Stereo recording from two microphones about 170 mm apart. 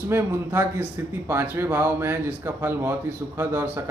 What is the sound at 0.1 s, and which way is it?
Speech, 15° right (ahead or behind).